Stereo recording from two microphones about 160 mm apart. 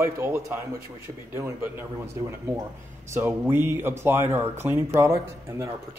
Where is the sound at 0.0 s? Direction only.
15° right (ahead or behind).